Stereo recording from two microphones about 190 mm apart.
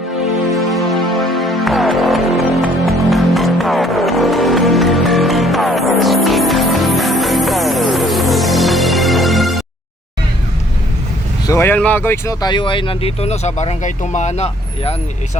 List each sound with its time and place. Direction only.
1.0 s music: centre (ahead or behind)
11.4 s speech: 15° left (ahead or behind); by 14.9 s 35° left (ahead or behind)